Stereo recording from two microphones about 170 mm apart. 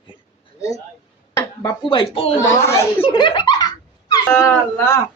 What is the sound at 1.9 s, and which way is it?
Speech, 30° left (ahead or behind).